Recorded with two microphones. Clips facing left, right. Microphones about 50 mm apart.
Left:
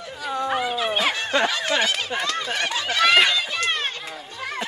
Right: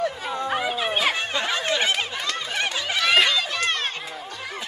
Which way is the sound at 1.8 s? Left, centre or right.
Right.